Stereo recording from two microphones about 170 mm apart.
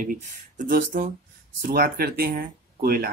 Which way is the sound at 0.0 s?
55° right (ahead or behind).